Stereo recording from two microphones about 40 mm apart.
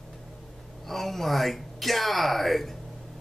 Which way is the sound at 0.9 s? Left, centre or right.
Centre.